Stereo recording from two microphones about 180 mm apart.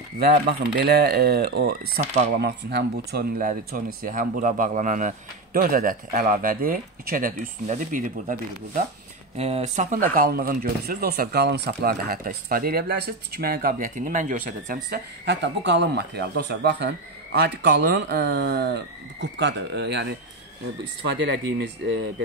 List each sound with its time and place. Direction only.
0.2 s speech: 55° right (ahead or behind)
12.0 s speech: 55° right (ahead or behind)
15.2 s speech: 75° right (ahead or behind)
21.3 s speech: 75° right (ahead or behind)